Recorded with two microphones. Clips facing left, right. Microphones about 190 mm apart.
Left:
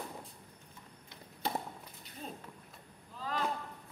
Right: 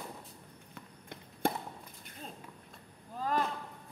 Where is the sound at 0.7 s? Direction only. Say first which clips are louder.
Right 6 dB; 50° right (ahead or behind).